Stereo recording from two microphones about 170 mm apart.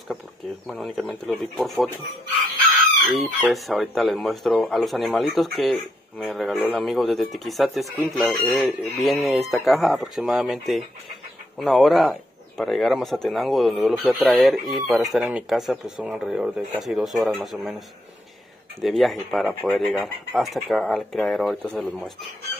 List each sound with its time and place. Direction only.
0.7 s speech: centre (ahead or behind)
3.1 s speech: centre (ahead or behind)